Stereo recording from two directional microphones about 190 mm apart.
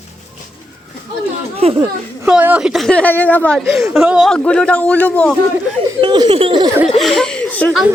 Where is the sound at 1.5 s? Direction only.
30° right (ahead or behind).